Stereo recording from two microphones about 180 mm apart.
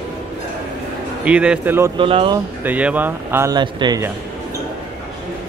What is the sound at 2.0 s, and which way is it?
Speech, 30° right (ahead or behind).